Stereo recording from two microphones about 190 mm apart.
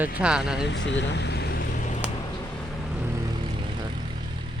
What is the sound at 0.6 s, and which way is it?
Speech, 70° left (ahead or behind).